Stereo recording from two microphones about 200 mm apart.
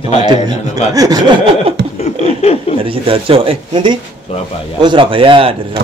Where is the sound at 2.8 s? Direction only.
25° right (ahead or behind).